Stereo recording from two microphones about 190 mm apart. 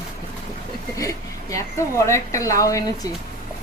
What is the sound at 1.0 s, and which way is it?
A woman's voice, 15° left (ahead or behind).